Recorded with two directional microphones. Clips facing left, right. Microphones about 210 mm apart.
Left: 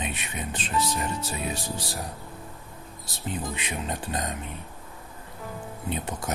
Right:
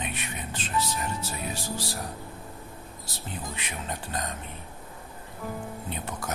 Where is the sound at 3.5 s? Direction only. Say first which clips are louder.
Left 4 dB; 20° left (ahead or behind).